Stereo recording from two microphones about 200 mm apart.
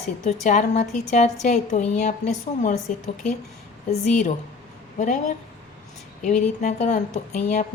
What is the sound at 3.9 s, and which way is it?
A woman's voice, 35° left (ahead or behind).